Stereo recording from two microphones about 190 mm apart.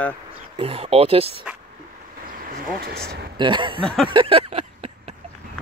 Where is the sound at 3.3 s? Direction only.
25° right (ahead or behind).